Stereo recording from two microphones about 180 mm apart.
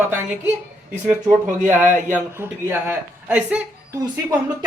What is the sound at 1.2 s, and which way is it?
Speech, 45° right (ahead or behind).